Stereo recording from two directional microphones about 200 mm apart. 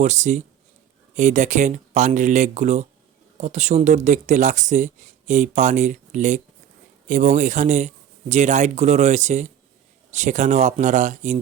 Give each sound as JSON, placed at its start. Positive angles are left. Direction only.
{"t": 0.0, "sound": "speech", "side_deg": -35}